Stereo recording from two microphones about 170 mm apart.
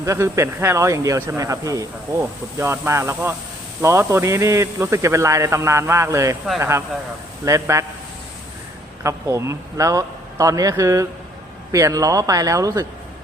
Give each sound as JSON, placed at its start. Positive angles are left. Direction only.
{"t": 0.0, "sound": "speech", "side_deg": -15}
{"t": 9.0, "sound": "a man's voice", "side_deg": -15}